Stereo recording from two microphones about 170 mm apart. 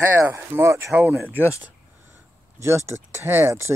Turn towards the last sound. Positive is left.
turn(degrees=-15)  # may be behind; listen again after turning